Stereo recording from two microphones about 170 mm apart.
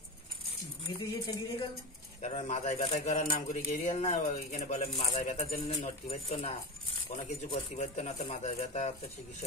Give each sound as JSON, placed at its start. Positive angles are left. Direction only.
{"t": 0.8, "sound": "speech", "side_deg": 25}
{"t": 2.2, "sound": "speech", "side_deg": 40}
{"t": 7.5, "sound": "speech", "side_deg": 40}